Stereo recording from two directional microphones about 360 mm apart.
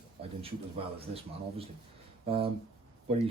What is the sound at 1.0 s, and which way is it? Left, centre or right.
Speech, centre.